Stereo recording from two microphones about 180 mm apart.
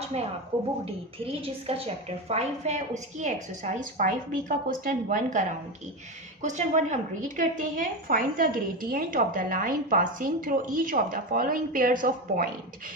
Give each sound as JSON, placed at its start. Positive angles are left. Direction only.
{"t": 0.9, "sound": "a woman's voice", "side_deg": -30}